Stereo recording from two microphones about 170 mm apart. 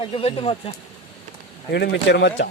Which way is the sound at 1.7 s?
85° left.